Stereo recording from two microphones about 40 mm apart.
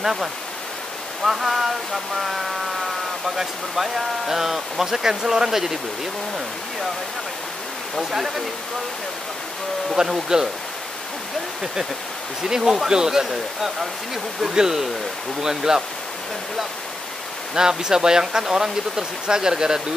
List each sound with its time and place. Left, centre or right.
0.0 s speech: centre
7.9 s speech: centre
9.9 s speech: centre
12.4 s speech: centre
17.6 s speech: centre